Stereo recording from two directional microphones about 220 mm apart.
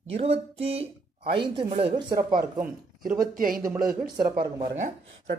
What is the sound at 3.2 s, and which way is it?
Speech, 40° right (ahead or behind).